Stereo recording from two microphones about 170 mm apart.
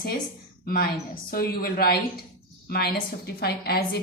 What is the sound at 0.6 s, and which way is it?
A woman's voice, 60° left (ahead or behind).